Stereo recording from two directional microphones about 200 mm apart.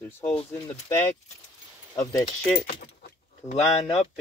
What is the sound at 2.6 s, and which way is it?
Speech, 50° left (ahead or behind).